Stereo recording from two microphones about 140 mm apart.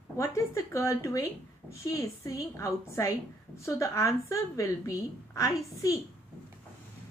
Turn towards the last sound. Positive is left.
turn(degrees=25)  # may be behind; listen again after turning